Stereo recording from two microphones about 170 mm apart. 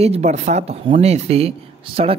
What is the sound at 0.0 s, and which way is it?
Speech, 40° right (ahead or behind).